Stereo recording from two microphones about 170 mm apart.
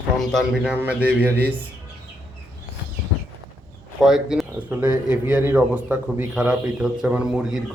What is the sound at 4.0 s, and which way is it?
A man's voice, centre (ahead or behind).